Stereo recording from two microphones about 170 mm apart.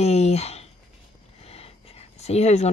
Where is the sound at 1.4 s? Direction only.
35° left (ahead or behind).